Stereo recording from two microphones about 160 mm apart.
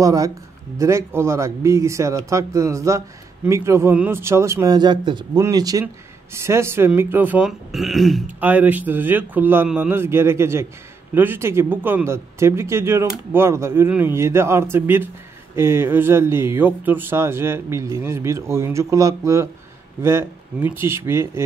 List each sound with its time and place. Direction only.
0.0 s speech: 20° right (ahead or behind)